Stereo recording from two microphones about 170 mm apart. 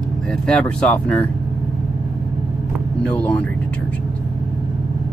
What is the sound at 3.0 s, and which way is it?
Speech, 5° left (ahead or behind).